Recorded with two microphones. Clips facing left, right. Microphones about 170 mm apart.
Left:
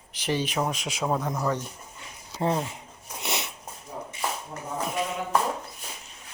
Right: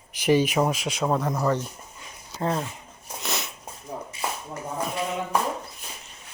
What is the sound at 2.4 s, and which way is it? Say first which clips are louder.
Speech: left 1 dB; 15° left (ahead or behind).